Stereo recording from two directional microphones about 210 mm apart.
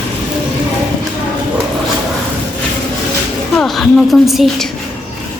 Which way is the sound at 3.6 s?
Centre (ahead or behind).